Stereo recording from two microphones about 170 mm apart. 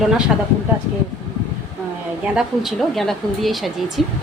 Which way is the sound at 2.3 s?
Centre (ahead or behind).